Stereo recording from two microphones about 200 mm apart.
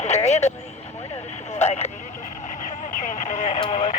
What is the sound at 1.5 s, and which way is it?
Speech, 35° left (ahead or behind).